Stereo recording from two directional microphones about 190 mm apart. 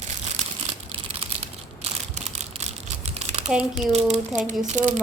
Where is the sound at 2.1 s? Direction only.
35° right (ahead or behind).